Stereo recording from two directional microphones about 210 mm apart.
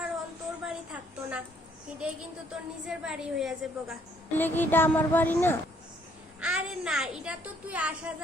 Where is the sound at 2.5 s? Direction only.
5° right (ahead or behind).